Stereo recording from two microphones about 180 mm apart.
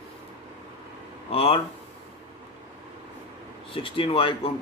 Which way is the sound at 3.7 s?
30° left (ahead or behind).